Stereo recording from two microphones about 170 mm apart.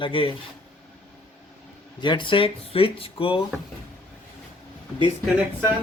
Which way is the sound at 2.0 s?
30° left (ahead or behind).